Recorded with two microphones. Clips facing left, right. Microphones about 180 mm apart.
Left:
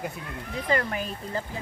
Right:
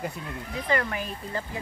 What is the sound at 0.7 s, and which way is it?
Speech, 30° left (ahead or behind).